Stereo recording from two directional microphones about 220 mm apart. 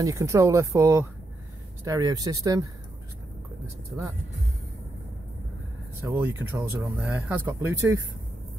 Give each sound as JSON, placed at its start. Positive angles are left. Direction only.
{"t": 0.0, "sound": "speech", "side_deg": -15}
{"t": 6.0, "sound": "speech", "side_deg": -10}